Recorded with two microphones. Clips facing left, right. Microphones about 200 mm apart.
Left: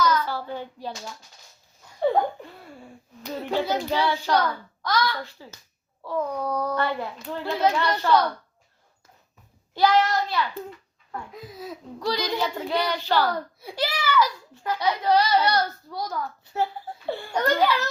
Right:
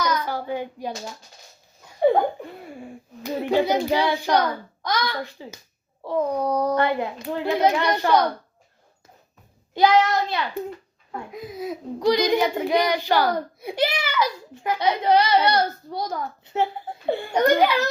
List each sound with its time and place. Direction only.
0.0 s hands: 15° right (ahead or behind)
2.7 s hands: 15° right (ahead or behind)
4.8 s a child's voice: 20° right (ahead or behind)
5.2 s hands: 15° right (ahead or behind)
10.0 s a child's voice: 20° right (ahead or behind)
11.1 s hands: 15° right (ahead or behind)
12.5 s a child's voice: 15° right (ahead or behind)